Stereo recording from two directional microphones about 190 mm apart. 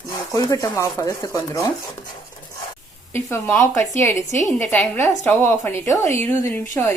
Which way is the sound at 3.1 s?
10° left (ahead or behind).